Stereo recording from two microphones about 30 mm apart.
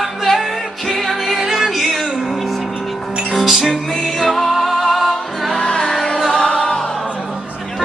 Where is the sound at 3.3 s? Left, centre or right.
Centre.